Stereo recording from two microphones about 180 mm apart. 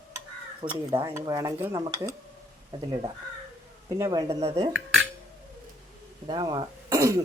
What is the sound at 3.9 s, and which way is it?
Speech, 15° right (ahead or behind).